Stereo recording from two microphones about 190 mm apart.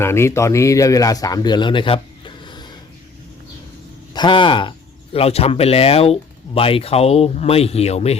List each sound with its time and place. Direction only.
0.0 s speech: 15° left (ahead or behind)
4.1 s speech: 25° left (ahead or behind)